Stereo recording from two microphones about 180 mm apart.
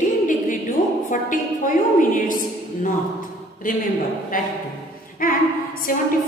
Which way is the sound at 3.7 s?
50° left (ahead or behind).